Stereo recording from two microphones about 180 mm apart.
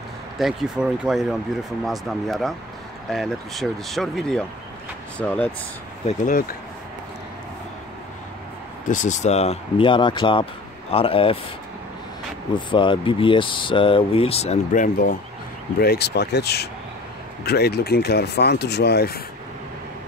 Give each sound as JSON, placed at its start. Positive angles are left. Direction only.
{"t": 0.4, "sound": "speech", "side_deg": 0}
{"t": 6.0, "sound": "speech", "side_deg": 45}
{"t": 8.8, "sound": "speech", "side_deg": 45}
{"t": 12.5, "sound": "speech", "side_deg": 25}
{"t": 15.8, "sound": "speech", "side_deg": 65}